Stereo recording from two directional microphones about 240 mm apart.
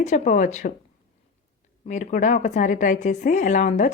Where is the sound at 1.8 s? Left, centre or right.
Left.